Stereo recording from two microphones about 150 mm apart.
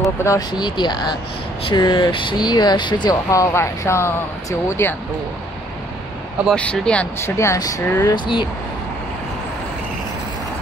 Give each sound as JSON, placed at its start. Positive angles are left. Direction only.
{"t": 0.2, "sound": "speech", "side_deg": 25}
{"t": 6.4, "sound": "speech", "side_deg": 5}
{"t": 7.3, "sound": "speech", "side_deg": 20}
{"t": 8.1, "sound": "speech", "side_deg": 30}